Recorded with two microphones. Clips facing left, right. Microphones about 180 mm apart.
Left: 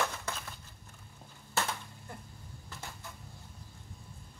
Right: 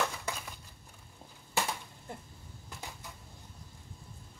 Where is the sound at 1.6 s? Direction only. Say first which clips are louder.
Even; 15° right (ahead or behind).